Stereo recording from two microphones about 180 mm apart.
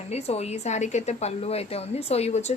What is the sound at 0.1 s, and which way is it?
A woman's voice, 35° left (ahead or behind).